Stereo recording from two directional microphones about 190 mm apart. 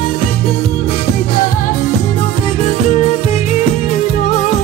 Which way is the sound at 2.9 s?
40° left (ahead or behind).